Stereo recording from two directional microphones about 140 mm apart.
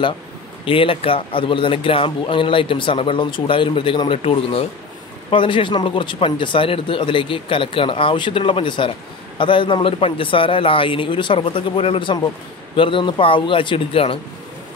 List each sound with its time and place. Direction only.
0.7 s a man's voice: 40° left (ahead or behind)